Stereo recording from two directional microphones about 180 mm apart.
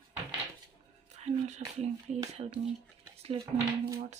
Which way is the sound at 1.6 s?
40° right (ahead or behind).